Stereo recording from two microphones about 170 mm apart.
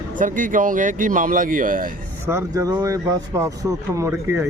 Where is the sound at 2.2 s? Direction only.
15° right (ahead or behind).